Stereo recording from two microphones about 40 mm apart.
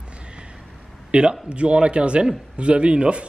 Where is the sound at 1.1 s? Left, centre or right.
Right.